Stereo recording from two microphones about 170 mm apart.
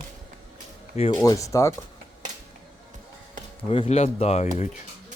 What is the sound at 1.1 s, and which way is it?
Speech, 20° left (ahead or behind).